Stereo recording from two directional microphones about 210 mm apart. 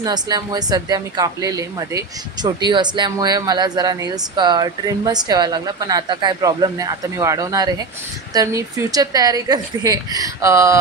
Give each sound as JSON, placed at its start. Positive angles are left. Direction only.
{"t": 0.0, "sound": "a woman's voice", "side_deg": -20}